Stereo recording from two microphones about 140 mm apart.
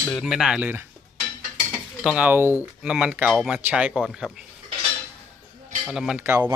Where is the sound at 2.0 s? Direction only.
10° right (ahead or behind).